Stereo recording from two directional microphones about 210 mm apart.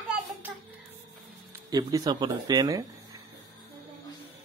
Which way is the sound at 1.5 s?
15° right (ahead or behind).